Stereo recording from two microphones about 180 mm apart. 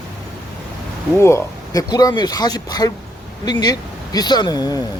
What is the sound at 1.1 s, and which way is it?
Speech, 15° left (ahead or behind).